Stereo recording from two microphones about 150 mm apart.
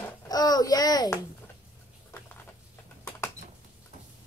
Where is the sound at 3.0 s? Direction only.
15° left (ahead or behind).